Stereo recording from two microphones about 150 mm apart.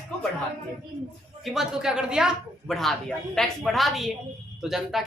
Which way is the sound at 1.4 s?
Centre (ahead or behind).